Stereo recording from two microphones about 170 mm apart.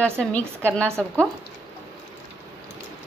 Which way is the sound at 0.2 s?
5° left (ahead or behind).